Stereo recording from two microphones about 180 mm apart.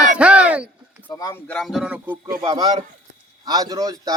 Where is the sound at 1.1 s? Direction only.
20° left (ahead or behind).